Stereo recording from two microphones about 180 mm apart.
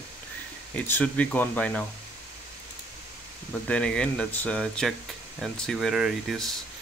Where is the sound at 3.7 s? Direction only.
5° left (ahead or behind).